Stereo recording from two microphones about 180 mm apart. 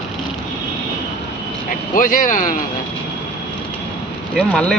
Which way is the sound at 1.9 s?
50° left (ahead or behind).